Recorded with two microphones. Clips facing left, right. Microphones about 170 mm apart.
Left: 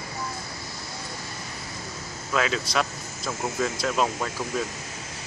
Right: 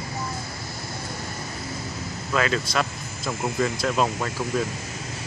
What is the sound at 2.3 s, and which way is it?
Speech, centre (ahead or behind).